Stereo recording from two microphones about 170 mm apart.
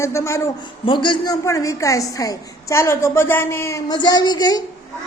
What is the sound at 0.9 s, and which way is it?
A woman's voice, 30° left (ahead or behind).